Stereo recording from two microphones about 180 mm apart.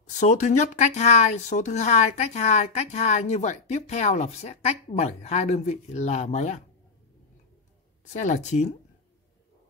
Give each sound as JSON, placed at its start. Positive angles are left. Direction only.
{"t": 0.2, "sound": "speech", "side_deg": 40}
{"t": 8.1, "sound": "speech", "side_deg": 40}